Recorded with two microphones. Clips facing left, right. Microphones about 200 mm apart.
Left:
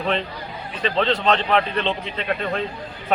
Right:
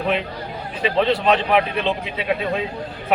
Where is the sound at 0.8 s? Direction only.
10° right (ahead or behind).